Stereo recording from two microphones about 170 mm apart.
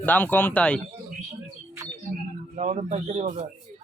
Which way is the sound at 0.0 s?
10° left (ahead or behind).